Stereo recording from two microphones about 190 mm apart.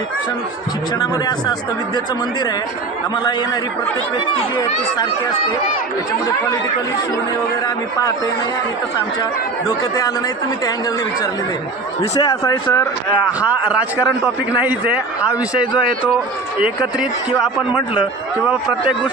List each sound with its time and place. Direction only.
0.9 s speech: 20° left (ahead or behind)
9.6 s speech: 20° left (ahead or behind)
12.1 s speech: 20° left (ahead or behind)
13.4 s speech: 10° right (ahead or behind)
15.3 s a man's voice: 5° right (ahead or behind)